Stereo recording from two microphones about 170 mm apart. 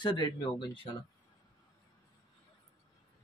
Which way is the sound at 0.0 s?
25° left (ahead or behind).